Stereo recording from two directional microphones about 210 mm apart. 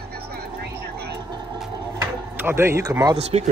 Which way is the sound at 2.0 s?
10° right (ahead or behind).